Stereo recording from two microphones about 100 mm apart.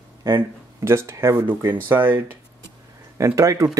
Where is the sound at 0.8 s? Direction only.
25° right (ahead or behind).